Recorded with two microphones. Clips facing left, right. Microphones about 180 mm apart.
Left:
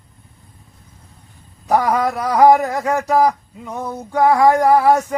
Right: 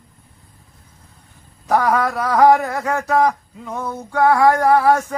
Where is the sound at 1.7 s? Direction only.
15° left (ahead or behind).